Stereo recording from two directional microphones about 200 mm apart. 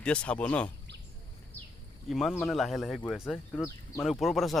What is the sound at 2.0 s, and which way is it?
Speech, centre (ahead or behind).